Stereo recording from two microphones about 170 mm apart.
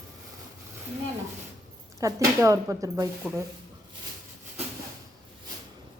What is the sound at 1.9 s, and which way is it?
Speech, 20° right (ahead or behind).